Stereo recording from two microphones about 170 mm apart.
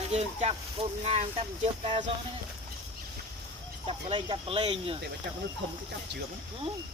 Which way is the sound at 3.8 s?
30° right (ahead or behind).